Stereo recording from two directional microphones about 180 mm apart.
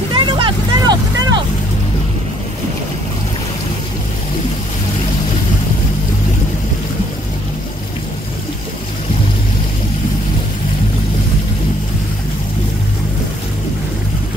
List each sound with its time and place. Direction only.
0.1 s vehicle: 25° right (ahead or behind)